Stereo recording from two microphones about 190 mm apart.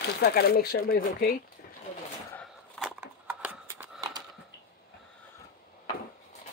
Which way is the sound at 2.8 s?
10° right (ahead or behind).